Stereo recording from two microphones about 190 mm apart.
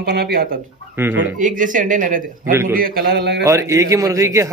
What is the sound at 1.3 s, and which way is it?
Speech, 40° right (ahead or behind).